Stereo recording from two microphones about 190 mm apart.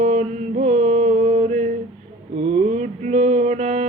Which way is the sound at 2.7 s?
40° right (ahead or behind).